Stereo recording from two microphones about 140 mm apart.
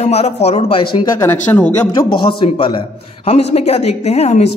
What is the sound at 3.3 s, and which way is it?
A woman's voice, 50° left (ahead or behind).